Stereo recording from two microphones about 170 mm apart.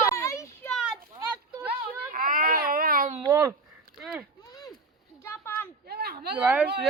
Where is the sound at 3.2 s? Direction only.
15° right (ahead or behind).